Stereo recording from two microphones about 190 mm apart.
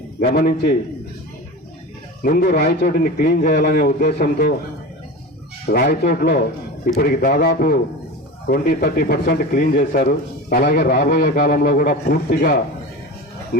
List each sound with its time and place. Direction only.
0.2 s a man's voice: 50° left (ahead or behind)
2.2 s a man's voice: 45° left (ahead or behind)
5.6 s a man's voice: 55° left (ahead or behind)